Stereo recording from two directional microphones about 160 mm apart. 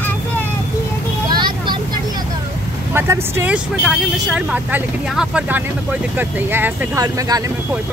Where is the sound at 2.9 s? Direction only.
15° right (ahead or behind).